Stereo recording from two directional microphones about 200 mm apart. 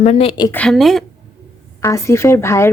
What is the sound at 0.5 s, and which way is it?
Speech, 5° left (ahead or behind).